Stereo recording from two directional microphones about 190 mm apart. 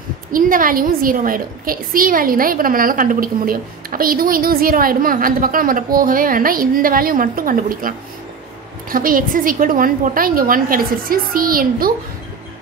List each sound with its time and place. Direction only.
0.3 s a woman's voice: 45° right (ahead or behind)
8.9 s a woman's voice: 45° right (ahead or behind)